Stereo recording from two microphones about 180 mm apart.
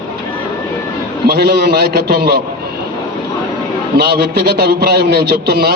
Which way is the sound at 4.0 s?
60° right (ahead or behind).